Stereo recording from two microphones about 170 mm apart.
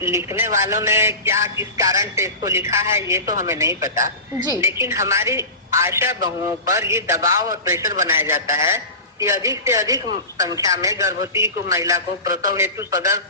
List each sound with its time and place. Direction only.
0.0 s a man's voice: 15° right (ahead or behind)